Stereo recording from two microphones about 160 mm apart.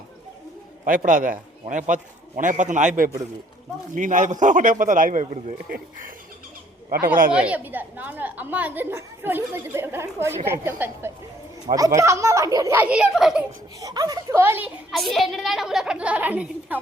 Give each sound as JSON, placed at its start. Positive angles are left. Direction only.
{"t": 0.9, "sound": "a man's voice", "side_deg": -60}
{"t": 5.2, "sound": "a man's voice", "side_deg": -45}
{"t": 5.6, "sound": "speech", "side_deg": -70}
{"t": 7.3, "sound": "a woman's voice", "side_deg": -10}
{"t": 13.7, "sound": "a child's voice", "side_deg": -25}
{"t": 15.1, "sound": "a woman's voice", "side_deg": 0}